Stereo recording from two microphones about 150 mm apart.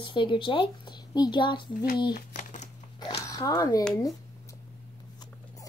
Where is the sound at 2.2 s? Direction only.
60° left (ahead or behind).